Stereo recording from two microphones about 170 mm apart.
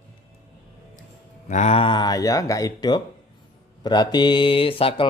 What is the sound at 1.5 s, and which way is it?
Speech, 40° left (ahead or behind).